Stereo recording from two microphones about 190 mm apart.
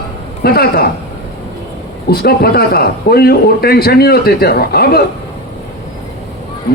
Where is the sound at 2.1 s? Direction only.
55° left (ahead or behind).